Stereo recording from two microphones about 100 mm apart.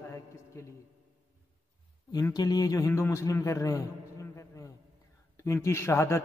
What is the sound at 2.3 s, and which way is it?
A man's voice, 40° left (ahead or behind).